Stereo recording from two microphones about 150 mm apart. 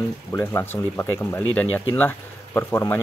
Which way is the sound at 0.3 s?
15° left (ahead or behind).